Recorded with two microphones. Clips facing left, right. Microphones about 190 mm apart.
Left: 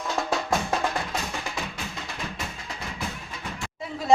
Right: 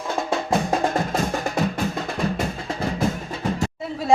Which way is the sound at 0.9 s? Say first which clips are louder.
Right 7 dB; 45° right (ahead or behind).